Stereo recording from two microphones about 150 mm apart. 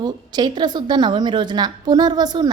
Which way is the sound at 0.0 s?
30° right (ahead or behind).